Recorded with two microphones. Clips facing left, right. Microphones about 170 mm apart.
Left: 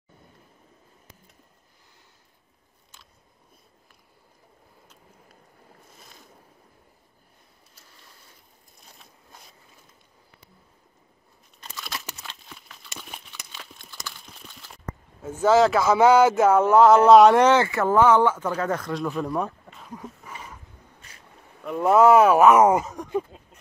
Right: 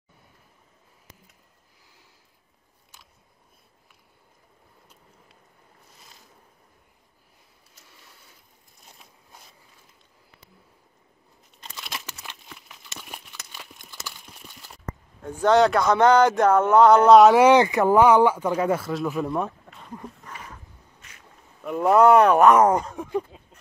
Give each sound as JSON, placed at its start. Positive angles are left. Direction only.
{"t": 11.6, "sound": "crumpling", "side_deg": -20}
{"t": 12.2, "sound": "a sound", "side_deg": -15}
{"t": 13.0, "sound": "crumpling", "side_deg": -10}
{"t": 13.5, "sound": "horse", "side_deg": -10}
{"t": 14.0, "sound": "a sound", "side_deg": -10}
{"t": 15.4, "sound": "speech", "side_deg": 0}
{"t": 17.5, "sound": "speech", "side_deg": -15}
{"t": 21.0, "sound": "vehicle", "side_deg": 35}
{"t": 21.6, "sound": "a sound", "side_deg": 0}